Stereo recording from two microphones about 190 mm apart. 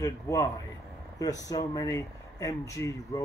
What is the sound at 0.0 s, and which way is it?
A man's voice, 15° left (ahead or behind).